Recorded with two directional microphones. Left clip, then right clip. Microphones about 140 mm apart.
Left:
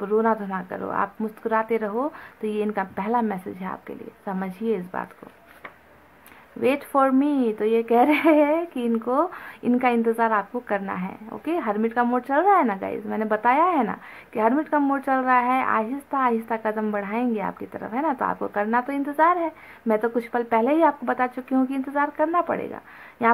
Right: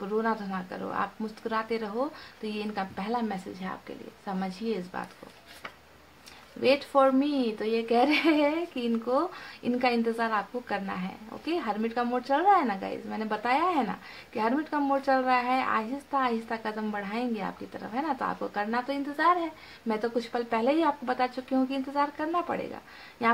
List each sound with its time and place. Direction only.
0.0 s a woman's voice: 40° left (ahead or behind)
6.9 s speech: 45° left (ahead or behind)